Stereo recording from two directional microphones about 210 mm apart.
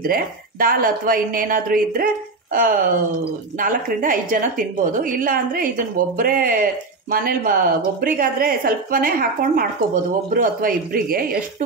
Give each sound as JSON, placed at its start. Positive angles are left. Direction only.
{"t": 0.0, "sound": "a woman's voice", "side_deg": -45}